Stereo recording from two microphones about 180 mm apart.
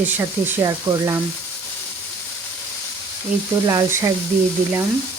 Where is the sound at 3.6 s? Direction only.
15° right (ahead or behind).